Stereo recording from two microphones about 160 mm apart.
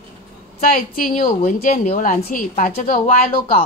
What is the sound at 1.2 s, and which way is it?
A woman's voice, 45° left (ahead or behind).